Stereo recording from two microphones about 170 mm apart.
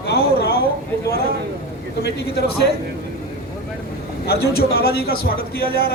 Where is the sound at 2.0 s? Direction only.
75° left (ahead or behind).